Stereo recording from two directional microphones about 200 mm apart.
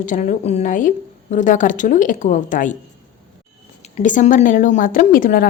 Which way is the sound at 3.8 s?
35° left (ahead or behind).